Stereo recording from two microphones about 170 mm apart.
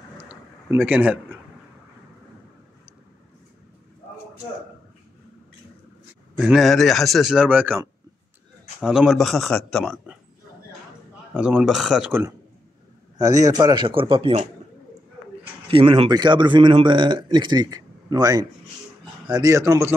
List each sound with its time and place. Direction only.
0.3 s a sound: 10° right (ahead or behind)
6.3 s a man's voice: centre (ahead or behind)
11.3 s a man's voice: 5° right (ahead or behind)
12.1 s a man's voice: 15° right (ahead or behind); by 14.5 s 35° right (ahead or behind)
15.7 s a man's voice: 30° right (ahead or behind); by 19.9 s 15° right (ahead or behind)